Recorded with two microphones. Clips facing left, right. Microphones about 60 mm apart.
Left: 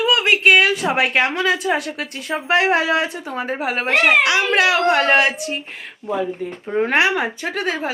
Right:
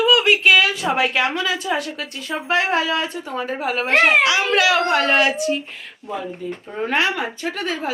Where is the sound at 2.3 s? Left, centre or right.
Left.